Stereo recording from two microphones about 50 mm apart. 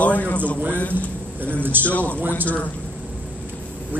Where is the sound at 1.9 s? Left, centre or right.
Left.